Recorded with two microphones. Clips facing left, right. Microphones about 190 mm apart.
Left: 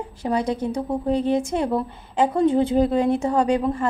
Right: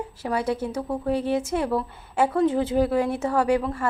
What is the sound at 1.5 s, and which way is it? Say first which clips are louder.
A woman's voice: left 2 dB; 25° left (ahead or behind).